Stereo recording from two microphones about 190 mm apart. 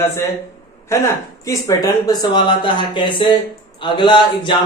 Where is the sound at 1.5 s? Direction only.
15° left (ahead or behind).